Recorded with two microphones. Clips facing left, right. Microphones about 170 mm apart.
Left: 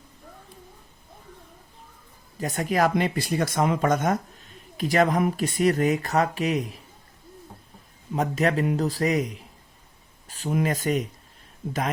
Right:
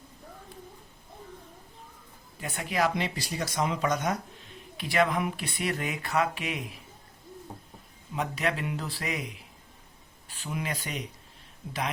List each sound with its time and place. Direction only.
2.4 s speech: 40° left (ahead or behind)
8.1 s speech: 40° left (ahead or behind)